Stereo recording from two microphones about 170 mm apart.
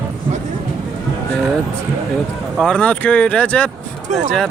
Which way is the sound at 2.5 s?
5° left (ahead or behind).